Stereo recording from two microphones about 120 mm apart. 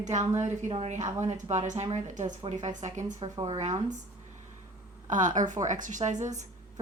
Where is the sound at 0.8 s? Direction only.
90° right.